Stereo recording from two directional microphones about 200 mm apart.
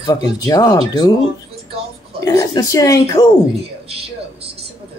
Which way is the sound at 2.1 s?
15° left (ahead or behind).